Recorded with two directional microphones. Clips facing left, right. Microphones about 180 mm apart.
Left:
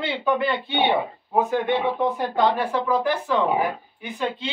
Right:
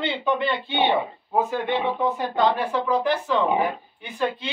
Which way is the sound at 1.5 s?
10° left (ahead or behind).